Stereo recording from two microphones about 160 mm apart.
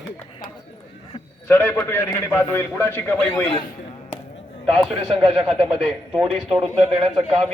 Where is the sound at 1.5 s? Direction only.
15° left (ahead or behind).